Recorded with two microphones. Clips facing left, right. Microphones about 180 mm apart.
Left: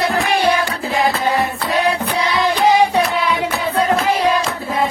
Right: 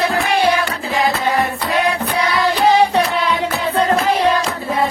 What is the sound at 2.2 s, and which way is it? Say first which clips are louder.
Music: even; 20° left (ahead or behind).